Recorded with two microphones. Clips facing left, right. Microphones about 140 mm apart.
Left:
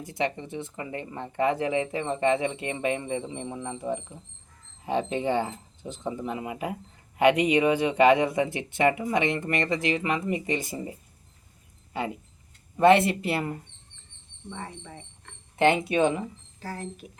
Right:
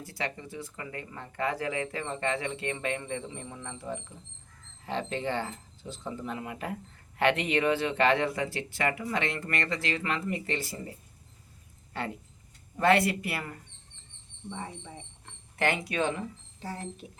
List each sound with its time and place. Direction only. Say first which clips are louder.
0.0 s speech: left 7 dB; 20° left (ahead or behind)
12.8 s speech: left 5 dB; 20° left (ahead or behind)
14.5 s speech: left 1 dB; 15° right (ahead or behind)
15.5 s speech: left 7 dB; 20° left (ahead or behind)
16.6 s speech: left 2 dB; 20° right (ahead or behind)